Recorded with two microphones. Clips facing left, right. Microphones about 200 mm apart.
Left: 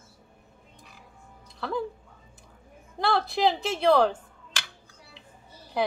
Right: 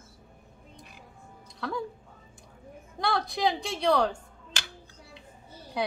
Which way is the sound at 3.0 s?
Centre (ahead or behind).